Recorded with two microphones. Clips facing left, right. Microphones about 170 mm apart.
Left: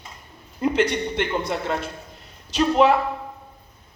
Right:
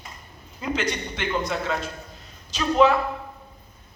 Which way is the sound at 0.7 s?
60° left (ahead or behind).